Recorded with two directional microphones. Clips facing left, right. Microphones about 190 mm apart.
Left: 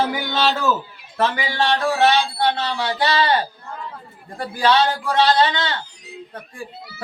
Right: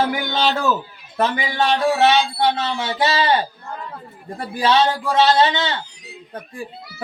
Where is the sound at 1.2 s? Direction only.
20° right (ahead or behind).